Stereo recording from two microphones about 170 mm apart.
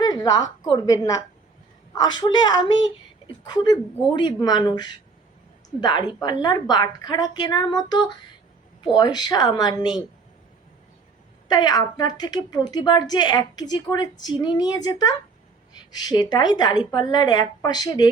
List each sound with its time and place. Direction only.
0.0 s a woman's voice: 20° left (ahead or behind)
11.4 s a woman's voice: 25° left (ahead or behind)